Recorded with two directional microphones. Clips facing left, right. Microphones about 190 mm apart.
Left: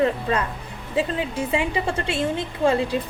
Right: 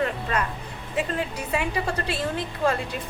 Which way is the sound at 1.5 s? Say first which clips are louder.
Left 1 dB; 25° left (ahead or behind).